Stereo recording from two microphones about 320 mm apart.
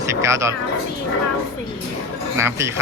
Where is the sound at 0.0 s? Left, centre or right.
Centre.